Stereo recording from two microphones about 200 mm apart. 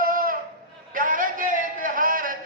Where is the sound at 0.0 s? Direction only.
45° right (ahead or behind).